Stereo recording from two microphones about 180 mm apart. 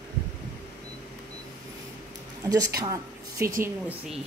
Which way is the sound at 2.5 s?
20° right (ahead or behind).